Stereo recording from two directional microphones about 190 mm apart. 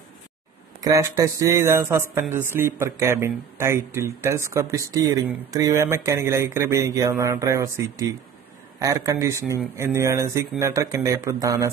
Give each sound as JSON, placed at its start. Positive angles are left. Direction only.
{"t": 0.7, "sound": "speech", "side_deg": -20}